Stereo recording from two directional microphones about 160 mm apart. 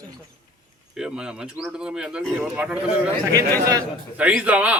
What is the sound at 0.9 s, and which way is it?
Speech, 5° right (ahead or behind).